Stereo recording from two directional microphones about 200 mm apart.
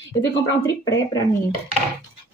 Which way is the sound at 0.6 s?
15° left (ahead or behind).